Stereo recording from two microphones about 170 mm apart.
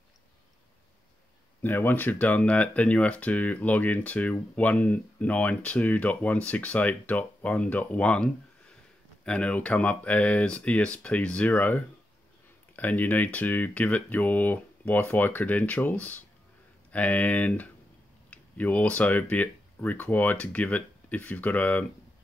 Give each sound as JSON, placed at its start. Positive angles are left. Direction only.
{"t": 1.6, "sound": "speech", "side_deg": 10}